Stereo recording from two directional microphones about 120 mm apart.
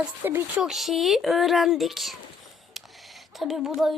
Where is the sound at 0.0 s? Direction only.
15° right (ahead or behind).